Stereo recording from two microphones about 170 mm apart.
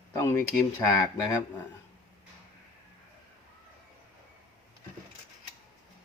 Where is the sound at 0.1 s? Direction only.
15° left (ahead or behind).